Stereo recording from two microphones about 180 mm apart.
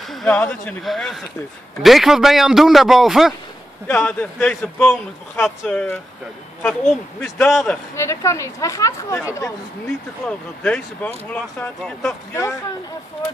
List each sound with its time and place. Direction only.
0.1 s a sound: centre (ahead or behind)
0.4 s speech: 15° left (ahead or behind)
0.8 s a man's voice: centre (ahead or behind)
3.8 s a man's voice: 10° left (ahead or behind)